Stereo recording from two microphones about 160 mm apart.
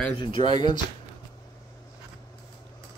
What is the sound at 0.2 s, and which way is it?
Speech, 30° left (ahead or behind).